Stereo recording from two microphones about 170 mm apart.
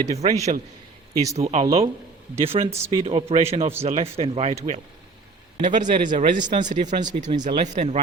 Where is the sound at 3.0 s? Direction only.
30° right (ahead or behind).